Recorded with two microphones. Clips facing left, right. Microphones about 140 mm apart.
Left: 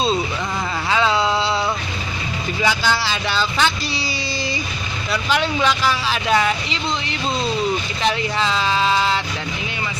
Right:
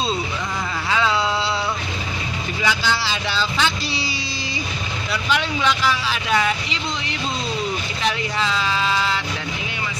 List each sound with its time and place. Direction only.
0.8 s a sound: 25° left (ahead or behind)
2.6 s speech: 40° left (ahead or behind)
5.3 s speech: 35° left (ahead or behind)
8.0 s vehicle: 30° left (ahead or behind)